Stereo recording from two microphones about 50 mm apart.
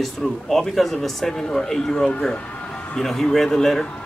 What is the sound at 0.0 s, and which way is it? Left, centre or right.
Speech, centre.